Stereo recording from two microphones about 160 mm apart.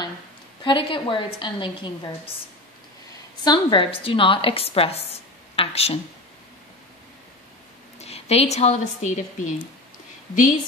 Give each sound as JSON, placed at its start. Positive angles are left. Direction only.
{"t": 0.7, "sound": "a woman's voice", "side_deg": 30}
{"t": 3.4, "sound": "a woman's voice", "side_deg": 35}
{"t": 8.0, "sound": "speech", "side_deg": 40}